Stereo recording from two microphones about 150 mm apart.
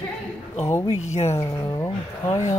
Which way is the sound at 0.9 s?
50° left (ahead or behind).